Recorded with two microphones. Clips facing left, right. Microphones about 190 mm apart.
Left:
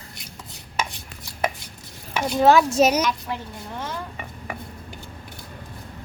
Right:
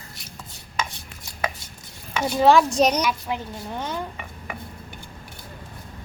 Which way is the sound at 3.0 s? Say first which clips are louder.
Even; 15° right (ahead or behind).